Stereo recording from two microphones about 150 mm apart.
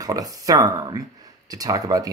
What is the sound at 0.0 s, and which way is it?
Speech, 25° right (ahead or behind).